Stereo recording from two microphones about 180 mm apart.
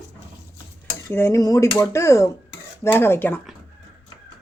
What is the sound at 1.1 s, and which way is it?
Speech, 15° left (ahead or behind).